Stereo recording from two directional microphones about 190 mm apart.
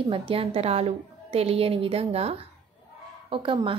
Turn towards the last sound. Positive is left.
turn(degrees=-25)  # may be behind; listen again after turning